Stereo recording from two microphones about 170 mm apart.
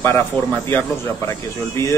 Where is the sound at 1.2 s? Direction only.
15° left (ahead or behind).